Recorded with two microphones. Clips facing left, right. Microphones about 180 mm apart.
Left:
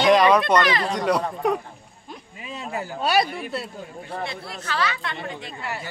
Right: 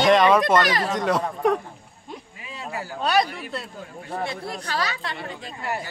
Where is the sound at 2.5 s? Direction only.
20° left (ahead or behind).